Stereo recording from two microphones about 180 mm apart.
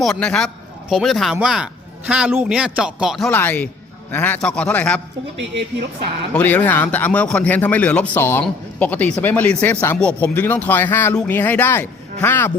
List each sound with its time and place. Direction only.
0.0 s a man's voice: 5° left (ahead or behind)
3.2 s speech: 10° left (ahead or behind)
6.3 s speech: 10° left (ahead or behind)